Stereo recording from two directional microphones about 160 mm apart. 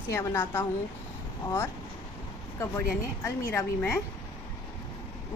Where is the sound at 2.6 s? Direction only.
20° left (ahead or behind).